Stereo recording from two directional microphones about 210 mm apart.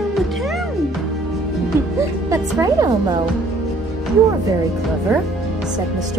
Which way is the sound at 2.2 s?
15° right (ahead or behind).